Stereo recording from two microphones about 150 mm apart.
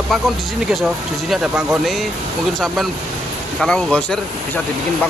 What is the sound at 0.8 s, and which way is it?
Speech, 5° right (ahead or behind).